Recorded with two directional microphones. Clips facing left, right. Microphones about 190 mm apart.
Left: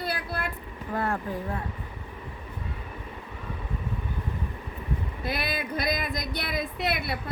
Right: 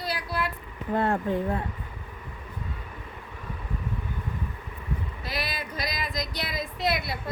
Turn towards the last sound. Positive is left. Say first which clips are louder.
# right 1 dB
turn(degrees=60)  # may be behind; listen again after turning